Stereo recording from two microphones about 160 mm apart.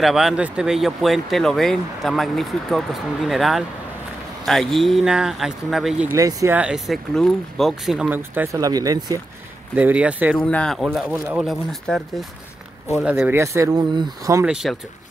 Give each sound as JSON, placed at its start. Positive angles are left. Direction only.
{"t": 0.0, "sound": "speech", "side_deg": 0}
{"t": 6.1, "sound": "speech", "side_deg": -20}
{"t": 8.2, "sound": "speech", "side_deg": -15}
{"t": 9.8, "sound": "speech", "side_deg": -10}
{"t": 10.3, "sound": "speech", "side_deg": 5}
{"t": 13.0, "sound": "speech", "side_deg": -10}
{"t": 14.4, "sound": "speech", "side_deg": -5}